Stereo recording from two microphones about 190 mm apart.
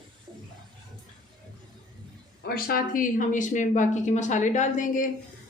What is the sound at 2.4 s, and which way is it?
Speech, 50° left (ahead or behind).